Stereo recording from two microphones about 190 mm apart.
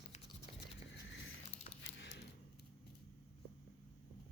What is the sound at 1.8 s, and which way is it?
Coin, 75° left (ahead or behind).